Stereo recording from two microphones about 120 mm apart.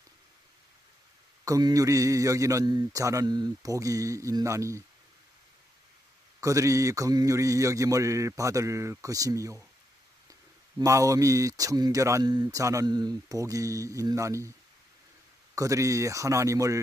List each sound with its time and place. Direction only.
1.4 s speech: 30° right (ahead or behind)
6.4 s speech: 25° right (ahead or behind)
10.8 s speech: 25° right (ahead or behind)
15.5 s speech: 25° right (ahead or behind)